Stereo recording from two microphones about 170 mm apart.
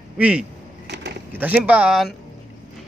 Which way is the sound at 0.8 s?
90° right.